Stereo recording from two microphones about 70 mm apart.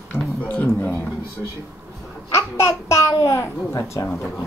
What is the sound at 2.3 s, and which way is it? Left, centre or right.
Speech, left.